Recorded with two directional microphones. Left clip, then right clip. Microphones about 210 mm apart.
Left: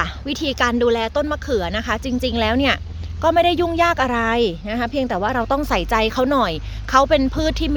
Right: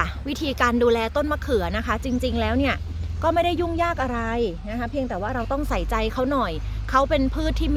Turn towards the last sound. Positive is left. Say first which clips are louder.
# left 5 dB
turn(degrees=25)  # may be behind; listen again after turning